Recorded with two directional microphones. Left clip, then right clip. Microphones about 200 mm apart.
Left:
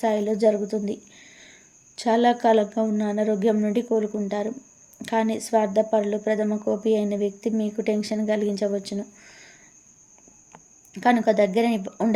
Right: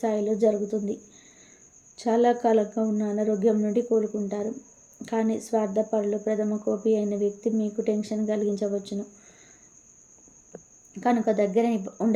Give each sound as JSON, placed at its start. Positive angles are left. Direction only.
{"t": 0.0, "sound": "speech", "side_deg": 15}
{"t": 2.0, "sound": "speech", "side_deg": 15}
{"t": 5.0, "sound": "speech", "side_deg": 15}
{"t": 10.9, "sound": "speech", "side_deg": 15}